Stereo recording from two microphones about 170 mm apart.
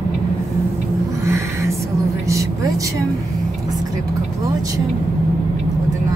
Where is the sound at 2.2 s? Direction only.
20° right (ahead or behind).